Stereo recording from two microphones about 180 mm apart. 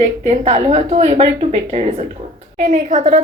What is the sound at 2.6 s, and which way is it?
Speech, 45° right (ahead or behind).